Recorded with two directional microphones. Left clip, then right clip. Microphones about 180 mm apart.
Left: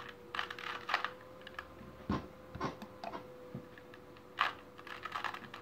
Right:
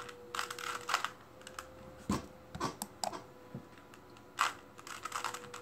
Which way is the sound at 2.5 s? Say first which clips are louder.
Right 2 dB; 60° right (ahead or behind).